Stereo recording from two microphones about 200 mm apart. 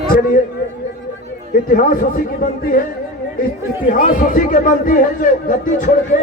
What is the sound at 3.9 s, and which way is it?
A man's voice, 40° left (ahead or behind).